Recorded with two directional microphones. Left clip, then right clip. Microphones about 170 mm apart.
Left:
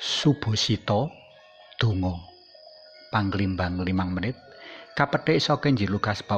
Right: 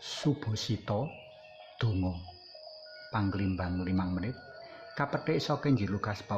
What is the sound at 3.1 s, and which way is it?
Speech, 20° left (ahead or behind).